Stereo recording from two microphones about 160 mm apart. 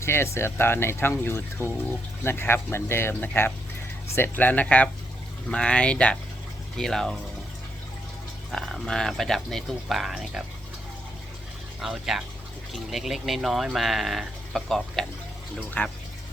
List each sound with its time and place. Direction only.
0.0 s speech: 15° left (ahead or behind)
8.4 s speech: centre (ahead or behind)
11.8 s speech: centre (ahead or behind)